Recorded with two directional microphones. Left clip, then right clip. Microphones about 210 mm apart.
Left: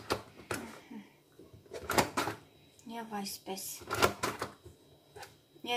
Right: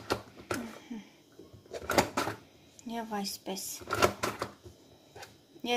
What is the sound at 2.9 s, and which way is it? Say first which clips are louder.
Speech: right 4 dB; 45° right (ahead or behind).